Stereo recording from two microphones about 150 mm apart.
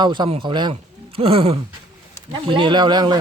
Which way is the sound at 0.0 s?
30° right (ahead or behind).